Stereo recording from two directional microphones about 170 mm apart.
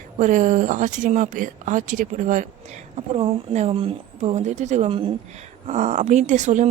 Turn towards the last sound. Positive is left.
turn(degrees=-45)  # may be behind; listen again after turning